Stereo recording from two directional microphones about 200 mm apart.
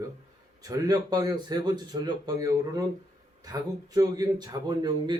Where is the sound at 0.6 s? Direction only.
20° right (ahead or behind).